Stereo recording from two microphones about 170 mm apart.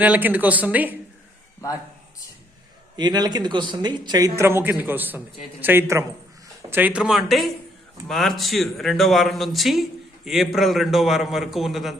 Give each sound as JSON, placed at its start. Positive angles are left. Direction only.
{"t": 0.0, "sound": "speech", "side_deg": -10}
{"t": 2.9, "sound": "speech", "side_deg": -25}